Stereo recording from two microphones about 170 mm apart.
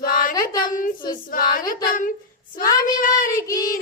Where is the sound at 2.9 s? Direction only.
50° left (ahead or behind).